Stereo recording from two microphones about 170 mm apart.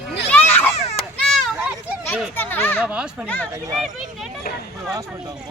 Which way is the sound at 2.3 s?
10° left (ahead or behind).